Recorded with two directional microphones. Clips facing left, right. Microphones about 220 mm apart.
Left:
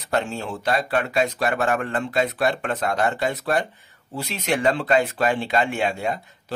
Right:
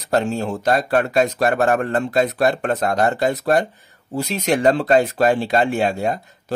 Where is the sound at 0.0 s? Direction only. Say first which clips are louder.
Right 5 dB; 40° right (ahead or behind).